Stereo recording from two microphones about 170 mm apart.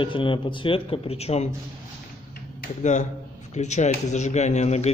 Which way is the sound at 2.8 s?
45° left (ahead or behind).